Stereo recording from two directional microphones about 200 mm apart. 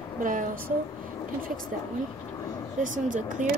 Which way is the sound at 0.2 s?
40° right (ahead or behind).